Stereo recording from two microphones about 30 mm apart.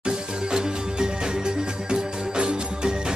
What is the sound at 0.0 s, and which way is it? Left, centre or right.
Music, right.